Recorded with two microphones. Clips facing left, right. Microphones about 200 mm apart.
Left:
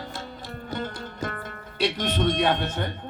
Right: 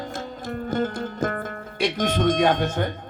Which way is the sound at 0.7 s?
45° right (ahead or behind).